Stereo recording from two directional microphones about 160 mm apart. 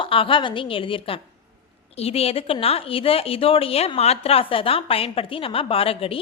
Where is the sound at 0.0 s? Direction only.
35° left (ahead or behind).